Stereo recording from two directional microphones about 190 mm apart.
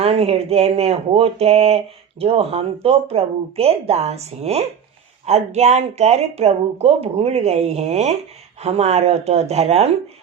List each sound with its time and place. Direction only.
0.0 s speech: 30° right (ahead or behind)